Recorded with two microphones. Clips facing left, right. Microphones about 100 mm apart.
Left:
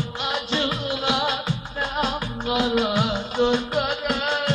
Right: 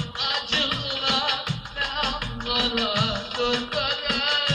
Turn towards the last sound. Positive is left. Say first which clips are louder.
# left 4 dB
turn(degrees=5)  # may be behind; listen again after turning